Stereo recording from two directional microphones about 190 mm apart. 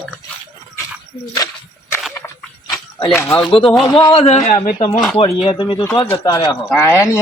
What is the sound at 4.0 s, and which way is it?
Speech, 30° left (ahead or behind).